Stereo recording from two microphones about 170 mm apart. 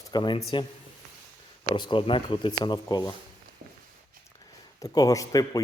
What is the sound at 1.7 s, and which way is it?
A man's voice, 30° left (ahead or behind).